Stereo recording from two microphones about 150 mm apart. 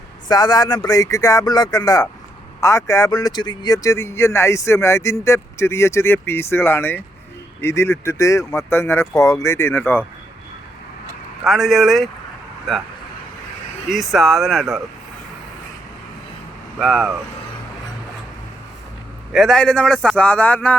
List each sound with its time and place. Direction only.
0.3 s speech: 25° left (ahead or behind)
11.4 s speech: centre (ahead or behind)
13.9 s speech: centre (ahead or behind)
16.7 s speech: centre (ahead or behind)
19.3 s speech: centre (ahead or behind)